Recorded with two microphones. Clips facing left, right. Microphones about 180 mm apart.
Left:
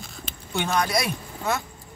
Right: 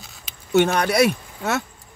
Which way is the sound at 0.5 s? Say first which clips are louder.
Right 7 dB; 65° right (ahead or behind).